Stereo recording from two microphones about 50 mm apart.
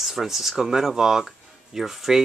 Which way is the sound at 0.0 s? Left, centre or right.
Centre.